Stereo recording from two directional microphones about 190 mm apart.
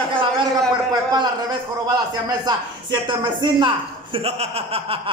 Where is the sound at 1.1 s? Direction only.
20° right (ahead or behind).